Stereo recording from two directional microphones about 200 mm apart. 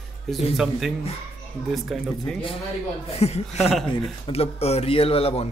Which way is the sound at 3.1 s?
30° left (ahead or behind).